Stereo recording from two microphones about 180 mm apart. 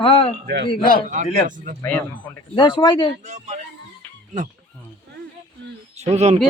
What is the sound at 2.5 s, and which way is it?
Speech, 25° left (ahead or behind).